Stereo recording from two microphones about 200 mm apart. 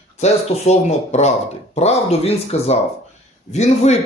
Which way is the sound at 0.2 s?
35° left (ahead or behind).